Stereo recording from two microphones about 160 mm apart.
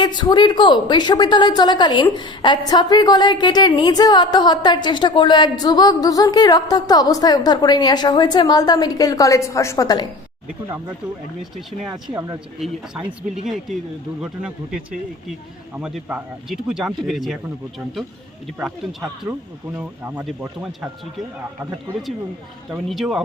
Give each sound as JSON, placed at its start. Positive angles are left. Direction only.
{"t": 0.0, "sound": "a woman's voice", "side_deg": 30}
{"t": 12.5, "sound": "speech", "side_deg": 0}
{"t": 18.6, "sound": "speech", "side_deg": 0}
{"t": 22.7, "sound": "speech", "side_deg": 0}